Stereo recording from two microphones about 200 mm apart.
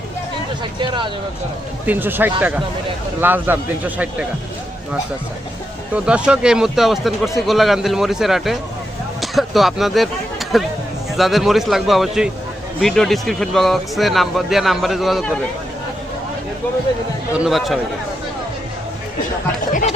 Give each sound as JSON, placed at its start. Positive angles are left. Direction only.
{"t": 0.8, "sound": "speech", "side_deg": -25}
{"t": 1.9, "sound": "a man's voice", "side_deg": -10}
{"t": 5.9, "sound": "speech", "side_deg": -5}
{"t": 17.3, "sound": "speech", "side_deg": 0}